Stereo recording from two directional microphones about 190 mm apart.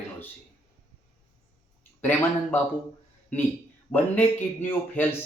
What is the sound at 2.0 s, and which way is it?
Speech, 10° left (ahead or behind).